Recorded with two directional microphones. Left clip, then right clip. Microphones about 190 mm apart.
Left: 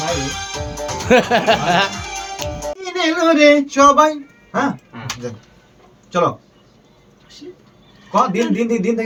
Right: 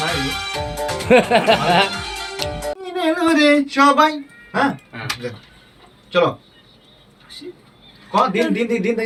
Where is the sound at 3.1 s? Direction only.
15° left (ahead or behind).